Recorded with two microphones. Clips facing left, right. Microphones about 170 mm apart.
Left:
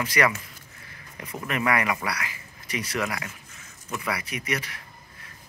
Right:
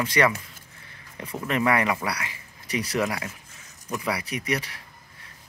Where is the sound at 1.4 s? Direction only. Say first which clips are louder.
Right 2 dB; 30° right (ahead or behind).